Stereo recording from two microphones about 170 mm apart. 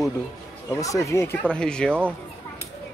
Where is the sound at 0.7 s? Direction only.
20° left (ahead or behind).